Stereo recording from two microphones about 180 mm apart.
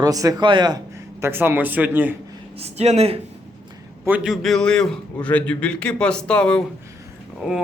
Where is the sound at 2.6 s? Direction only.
35° right (ahead or behind).